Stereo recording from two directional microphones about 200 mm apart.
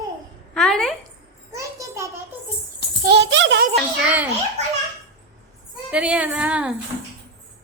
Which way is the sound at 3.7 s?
5° right (ahead or behind).